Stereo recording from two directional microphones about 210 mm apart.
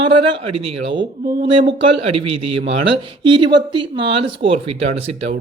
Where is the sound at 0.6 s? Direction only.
25° right (ahead or behind).